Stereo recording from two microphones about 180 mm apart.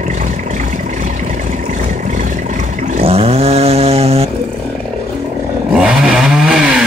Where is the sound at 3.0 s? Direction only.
35° right (ahead or behind).